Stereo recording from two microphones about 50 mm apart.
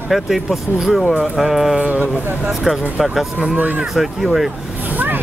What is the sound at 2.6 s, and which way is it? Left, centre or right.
Speech, centre.